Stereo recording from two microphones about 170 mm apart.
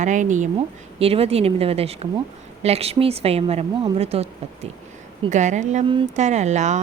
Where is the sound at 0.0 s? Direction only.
45° right (ahead or behind).